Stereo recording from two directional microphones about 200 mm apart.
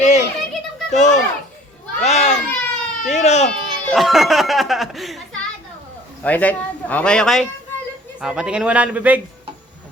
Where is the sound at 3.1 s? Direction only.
35° left (ahead or behind).